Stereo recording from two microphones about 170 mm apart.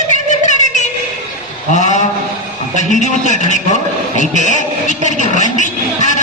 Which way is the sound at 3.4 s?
45° left (ahead or behind).